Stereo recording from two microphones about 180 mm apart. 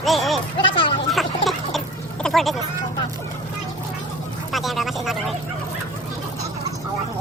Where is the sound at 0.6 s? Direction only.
25° left (ahead or behind).